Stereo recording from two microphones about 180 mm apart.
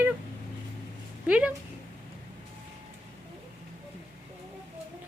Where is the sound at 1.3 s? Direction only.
5° right (ahead or behind).